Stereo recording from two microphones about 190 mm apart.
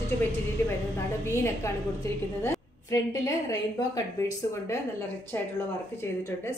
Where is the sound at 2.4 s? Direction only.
15° left (ahead or behind).